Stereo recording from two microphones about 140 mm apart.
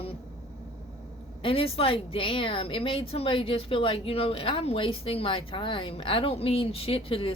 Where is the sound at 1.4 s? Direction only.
40° left (ahead or behind).